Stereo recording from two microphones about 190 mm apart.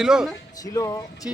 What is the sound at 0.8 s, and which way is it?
Speech, 20° left (ahead or behind).